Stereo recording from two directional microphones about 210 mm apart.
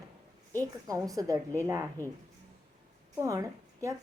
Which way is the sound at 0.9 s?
15° right (ahead or behind).